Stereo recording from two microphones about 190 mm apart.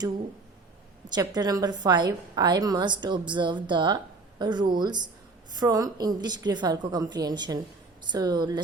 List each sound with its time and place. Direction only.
1.1 s a woman's voice: 20° right (ahead or behind)